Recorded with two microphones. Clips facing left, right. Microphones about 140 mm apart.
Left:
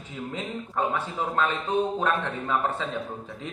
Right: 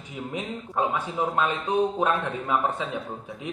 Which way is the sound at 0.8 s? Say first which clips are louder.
Right 2 dB; 15° right (ahead or behind).